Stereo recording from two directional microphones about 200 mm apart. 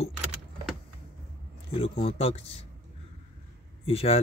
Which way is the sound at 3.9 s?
30° left (ahead or behind).